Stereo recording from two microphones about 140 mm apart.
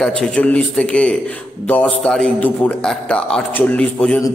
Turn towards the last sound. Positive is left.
turn(degrees=10)  # may be behind; listen again after turning